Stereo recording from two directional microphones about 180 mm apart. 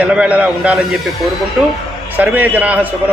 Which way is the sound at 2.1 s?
10° right (ahead or behind).